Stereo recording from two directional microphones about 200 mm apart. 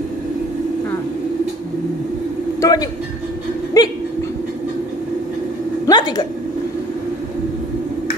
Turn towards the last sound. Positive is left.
turn(degrees=20)  # may be behind; listen again after turning